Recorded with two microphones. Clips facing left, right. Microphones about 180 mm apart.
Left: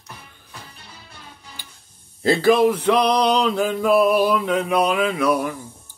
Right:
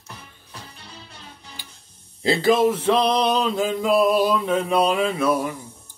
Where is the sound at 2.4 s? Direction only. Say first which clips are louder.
Left 2 dB; 25° right (ahead or behind).